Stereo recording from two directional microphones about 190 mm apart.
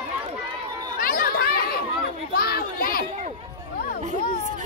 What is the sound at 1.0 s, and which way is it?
Chatter, 50° left (ahead or behind).